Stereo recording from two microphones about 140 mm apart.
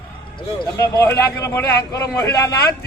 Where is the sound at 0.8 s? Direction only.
25° left (ahead or behind).